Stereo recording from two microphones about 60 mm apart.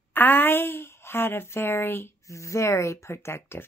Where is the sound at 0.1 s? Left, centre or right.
Left.